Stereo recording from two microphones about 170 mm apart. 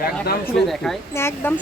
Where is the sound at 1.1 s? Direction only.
15° left (ahead or behind).